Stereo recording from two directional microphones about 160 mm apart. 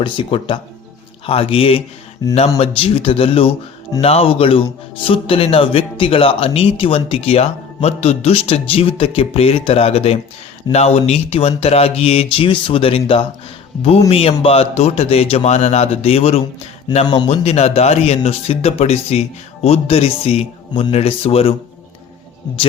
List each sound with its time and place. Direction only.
0.0 s speech: 30° left (ahead or behind)
2.2 s speech: 20° left (ahead or behind)
2.6 s speech: 35° left (ahead or behind)